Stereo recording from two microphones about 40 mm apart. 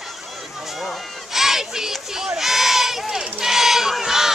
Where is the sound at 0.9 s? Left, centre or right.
Centre.